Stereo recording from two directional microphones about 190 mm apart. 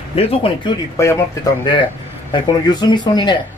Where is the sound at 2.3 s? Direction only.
20° left (ahead or behind).